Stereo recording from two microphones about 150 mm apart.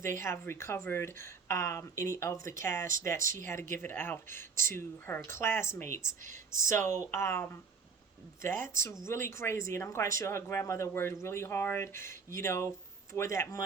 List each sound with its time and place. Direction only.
0.2 s speech: 15° left (ahead or behind)